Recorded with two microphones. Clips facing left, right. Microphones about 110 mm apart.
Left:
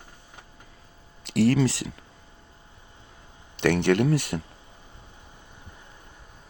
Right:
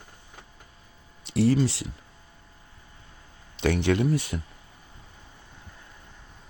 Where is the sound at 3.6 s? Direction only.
65° left (ahead or behind).